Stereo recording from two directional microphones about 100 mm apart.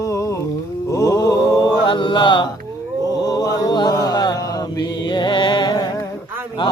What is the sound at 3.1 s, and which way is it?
Chant, 40° left (ahead or behind).